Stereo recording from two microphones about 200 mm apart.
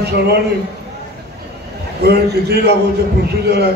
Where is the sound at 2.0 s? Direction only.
55° right (ahead or behind).